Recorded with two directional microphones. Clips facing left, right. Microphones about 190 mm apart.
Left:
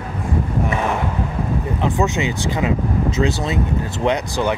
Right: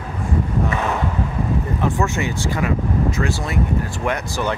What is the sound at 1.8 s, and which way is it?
Speech, 20° left (ahead or behind).